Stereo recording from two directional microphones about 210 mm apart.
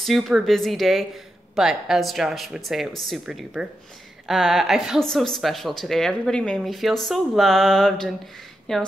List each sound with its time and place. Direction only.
0.0 s speech: centre (ahead or behind)